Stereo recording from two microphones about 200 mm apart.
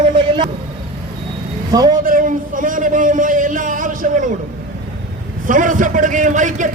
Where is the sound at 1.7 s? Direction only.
20° right (ahead or behind).